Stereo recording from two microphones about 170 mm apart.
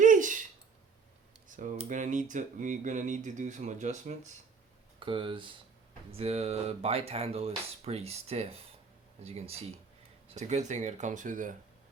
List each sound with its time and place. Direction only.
0.0 s a sound: 50° right (ahead or behind)
1.5 s computer keyboard: 50° right (ahead or behind)
1.9 s speech: 45° right (ahead or behind)
4.9 s speech: 30° right (ahead or behind); by 11.5 s 50° right (ahead or behind)